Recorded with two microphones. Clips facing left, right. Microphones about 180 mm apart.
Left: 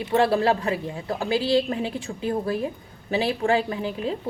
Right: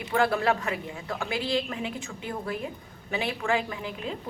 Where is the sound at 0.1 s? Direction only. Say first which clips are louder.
Left 4 dB; 30° left (ahead or behind).